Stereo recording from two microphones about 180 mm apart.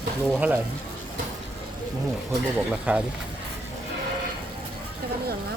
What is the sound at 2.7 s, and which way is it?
Speech, 5° right (ahead or behind).